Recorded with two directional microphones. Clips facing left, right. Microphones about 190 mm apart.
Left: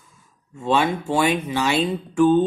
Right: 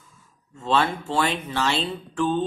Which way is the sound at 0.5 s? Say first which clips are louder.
Left 3 dB; 10° left (ahead or behind).